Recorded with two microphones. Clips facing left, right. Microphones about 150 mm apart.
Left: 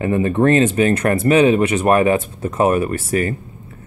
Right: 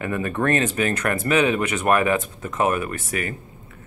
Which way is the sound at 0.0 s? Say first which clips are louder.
Left 8 dB; 25° left (ahead or behind).